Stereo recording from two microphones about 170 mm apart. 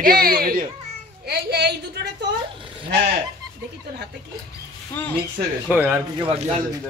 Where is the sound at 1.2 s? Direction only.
70° right (ahead or behind).